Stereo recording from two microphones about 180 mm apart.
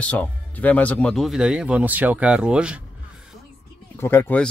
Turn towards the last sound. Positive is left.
turn(degrees=10)  # may be behind; listen again after turning